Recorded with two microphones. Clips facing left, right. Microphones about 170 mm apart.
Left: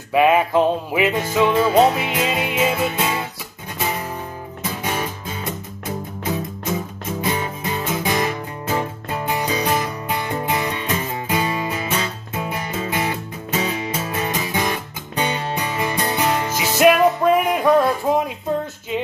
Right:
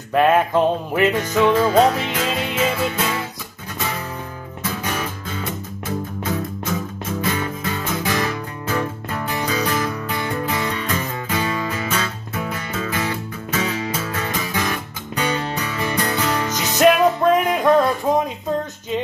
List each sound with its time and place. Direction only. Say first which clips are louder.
0.1 s music: even; 5° left (ahead or behind)
1.1 s music: right 1 dB; 20° left (ahead or behind)
2.0 s music: left 1 dB; 10° left (ahead or behind)
7.2 s music: left 1 dB; 20° left (ahead or behind)
16.5 s music: even; 5° left (ahead or behind)